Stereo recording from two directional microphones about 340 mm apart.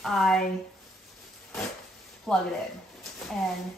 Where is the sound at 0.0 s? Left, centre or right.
Centre.